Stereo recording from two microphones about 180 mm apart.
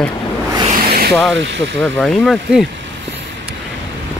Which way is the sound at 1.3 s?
80° right.